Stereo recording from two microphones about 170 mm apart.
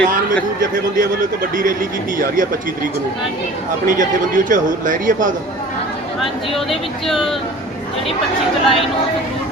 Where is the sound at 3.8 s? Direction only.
50° right (ahead or behind).